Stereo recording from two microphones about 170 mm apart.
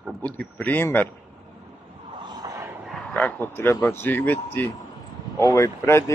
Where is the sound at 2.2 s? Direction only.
25° right (ahead or behind).